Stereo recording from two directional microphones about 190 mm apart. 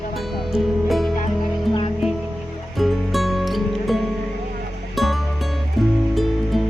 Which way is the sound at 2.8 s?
Centre (ahead or behind).